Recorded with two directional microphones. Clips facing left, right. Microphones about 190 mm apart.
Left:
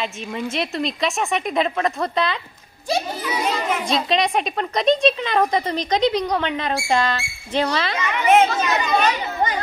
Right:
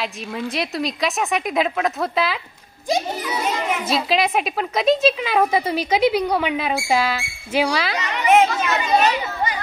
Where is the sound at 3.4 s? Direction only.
Centre (ahead or behind).